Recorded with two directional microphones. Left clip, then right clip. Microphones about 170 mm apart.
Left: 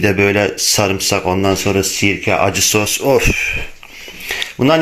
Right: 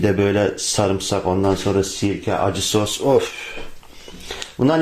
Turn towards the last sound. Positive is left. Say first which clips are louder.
# left 6 dB
turn(degrees=10)  # may be behind; listen again after turning